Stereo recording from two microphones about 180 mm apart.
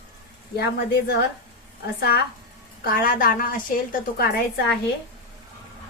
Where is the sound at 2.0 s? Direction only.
60° left (ahead or behind).